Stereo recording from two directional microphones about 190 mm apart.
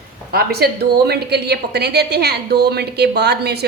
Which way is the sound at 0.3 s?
55° right (ahead or behind).